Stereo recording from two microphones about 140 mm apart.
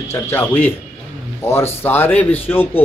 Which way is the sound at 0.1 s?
15° left (ahead or behind).